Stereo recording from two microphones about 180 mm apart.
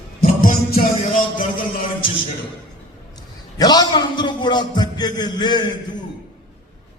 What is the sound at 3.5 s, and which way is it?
A man's voice, 20° left (ahead or behind).